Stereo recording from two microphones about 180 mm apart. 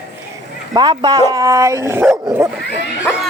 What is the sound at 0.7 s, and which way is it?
Speech, 25° right (ahead or behind).